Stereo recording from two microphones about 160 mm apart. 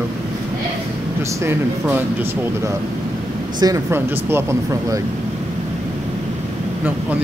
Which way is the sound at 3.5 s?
20° right (ahead or behind).